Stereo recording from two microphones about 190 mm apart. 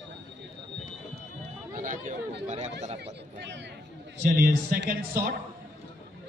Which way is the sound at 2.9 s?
65° right (ahead or behind).